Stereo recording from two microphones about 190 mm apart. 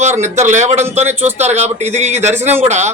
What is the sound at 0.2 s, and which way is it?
Speech, 40° right (ahead or behind).